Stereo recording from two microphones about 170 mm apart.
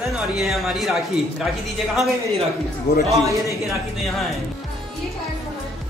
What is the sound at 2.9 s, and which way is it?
Speech, 65° left (ahead or behind).